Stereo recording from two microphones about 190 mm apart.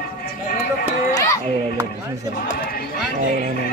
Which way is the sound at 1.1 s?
15° left (ahead or behind).